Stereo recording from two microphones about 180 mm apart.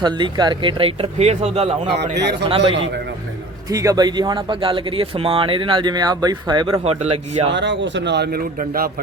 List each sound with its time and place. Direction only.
0.0 s speech: 25° right (ahead or behind)
1.9 s a man's voice: 65° right (ahead or behind)
3.7 s speech: 20° right (ahead or behind)
6.8 s speech: 35° right (ahead or behind)
7.5 s speech: 80° right; by 8.9 s 55° right (ahead or behind)